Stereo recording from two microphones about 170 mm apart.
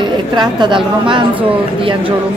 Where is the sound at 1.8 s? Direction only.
30° right (ahead or behind).